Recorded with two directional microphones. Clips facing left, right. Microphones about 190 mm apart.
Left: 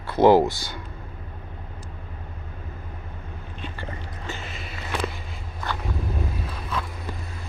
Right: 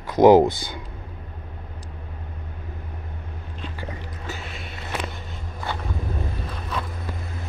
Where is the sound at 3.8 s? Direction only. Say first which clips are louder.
Right 1 dB; 5° right (ahead or behind).